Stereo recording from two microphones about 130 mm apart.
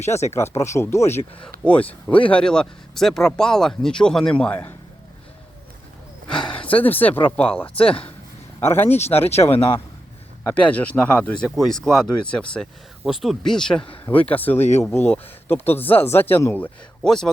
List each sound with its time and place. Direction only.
0.3 s speech: 20° left (ahead or behind)
1.1 s speech: 55° left (ahead or behind)
1.6 s speech: 10° left (ahead or behind)
6.5 s a sound: 45° left (ahead or behind)
6.7 s speech: 15° left (ahead or behind)
7.8 s speech: 45° left (ahead or behind)
8.6 s speech: 15° left (ahead or behind)
10.4 s speech: 10° left (ahead or behind)
14.6 s speech: 60° left (ahead or behind)
14.9 s speech: 15° left (ahead or behind)